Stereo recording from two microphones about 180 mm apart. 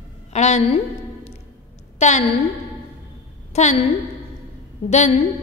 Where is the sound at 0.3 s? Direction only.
40° left (ahead or behind).